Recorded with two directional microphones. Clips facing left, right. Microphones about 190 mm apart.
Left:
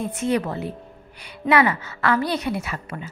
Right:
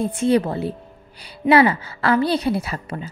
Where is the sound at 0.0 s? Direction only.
30° right (ahead or behind).